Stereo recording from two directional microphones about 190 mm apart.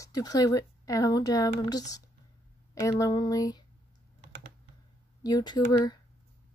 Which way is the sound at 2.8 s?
20° left (ahead or behind).